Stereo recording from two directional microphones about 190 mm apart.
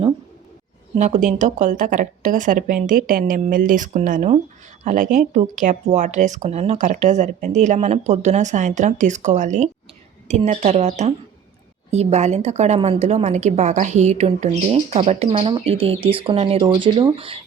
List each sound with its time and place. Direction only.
0.9 s a woman's voice: 40° right (ahead or behind)